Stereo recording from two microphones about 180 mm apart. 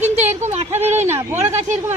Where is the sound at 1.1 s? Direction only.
15° right (ahead or behind).